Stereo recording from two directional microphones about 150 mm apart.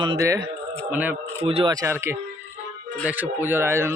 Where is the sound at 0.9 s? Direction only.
10° right (ahead or behind).